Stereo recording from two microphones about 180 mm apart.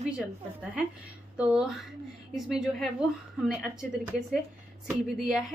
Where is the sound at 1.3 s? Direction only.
5° right (ahead or behind).